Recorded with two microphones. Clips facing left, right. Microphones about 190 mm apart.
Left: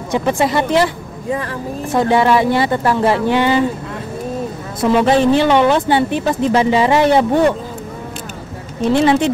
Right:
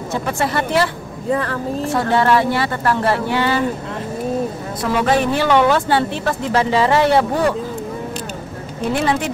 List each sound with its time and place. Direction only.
0.1 s speech: 15° left (ahead or behind)
4.9 s speech: 25° left (ahead or behind)
8.9 s speech: 25° left (ahead or behind)